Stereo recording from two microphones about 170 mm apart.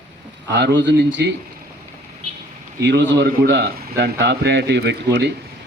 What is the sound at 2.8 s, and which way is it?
A man's voice, 90° right.